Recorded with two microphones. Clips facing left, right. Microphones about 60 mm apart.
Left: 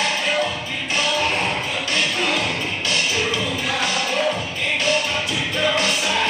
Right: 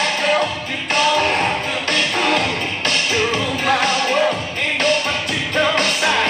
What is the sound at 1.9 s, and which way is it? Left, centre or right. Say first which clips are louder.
Music: right 4 dB; right.